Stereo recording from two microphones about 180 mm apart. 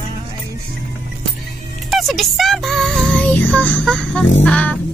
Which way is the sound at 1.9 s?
Centre (ahead or behind).